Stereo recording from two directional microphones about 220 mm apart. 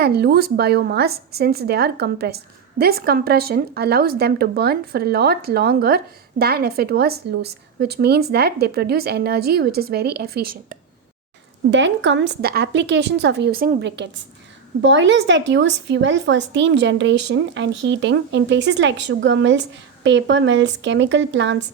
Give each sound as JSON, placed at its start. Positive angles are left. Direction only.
{"t": 0.0, "sound": "a woman's voice", "side_deg": -45}
{"t": 11.7, "sound": "a woman's voice", "side_deg": -55}